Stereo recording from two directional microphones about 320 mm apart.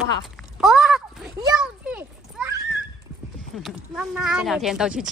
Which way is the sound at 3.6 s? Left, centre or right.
Centre.